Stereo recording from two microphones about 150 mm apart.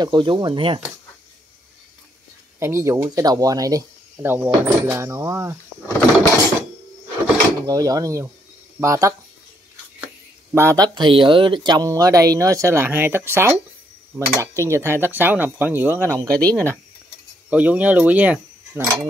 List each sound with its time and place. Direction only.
0.0 s speech: 30° right (ahead or behind)
2.6 s speech: 20° right (ahead or behind)
7.6 s speech: 25° right (ahead or behind)
10.5 s cutlery: 20° right (ahead or behind)
11.0 s speech: 30° right (ahead or behind); by 13.6 s 15° right (ahead or behind)
14.1 s cutlery: 15° right (ahead or behind)
16.3 s speech: 10° left (ahead or behind)
17.5 s cutlery: 10° right (ahead or behind)